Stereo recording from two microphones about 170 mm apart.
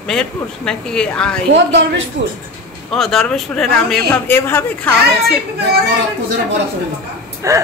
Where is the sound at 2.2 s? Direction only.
90° right.